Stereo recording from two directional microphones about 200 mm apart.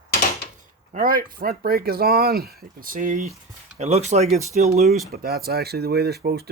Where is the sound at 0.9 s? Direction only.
45° right (ahead or behind).